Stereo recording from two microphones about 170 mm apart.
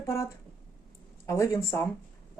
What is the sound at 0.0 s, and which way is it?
Speech, 15° left (ahead or behind).